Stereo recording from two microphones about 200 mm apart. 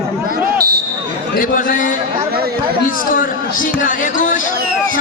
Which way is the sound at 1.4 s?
40° left (ahead or behind).